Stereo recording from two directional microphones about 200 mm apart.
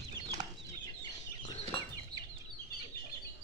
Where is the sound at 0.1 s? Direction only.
30° right (ahead or behind).